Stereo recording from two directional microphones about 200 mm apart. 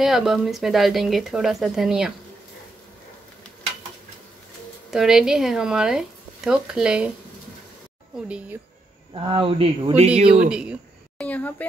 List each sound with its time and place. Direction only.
0.0 s speech: centre (ahead or behind)
4.9 s speech: centre (ahead or behind)
8.3 s speech: 5° right (ahead or behind)
9.1 s speech: 25° right (ahead or behind)
10.2 s speech: 5° right (ahead or behind)
11.2 s a woman's voice: 10° left (ahead or behind)